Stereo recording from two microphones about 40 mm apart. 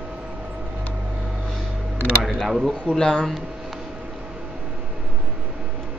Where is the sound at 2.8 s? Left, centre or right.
Left.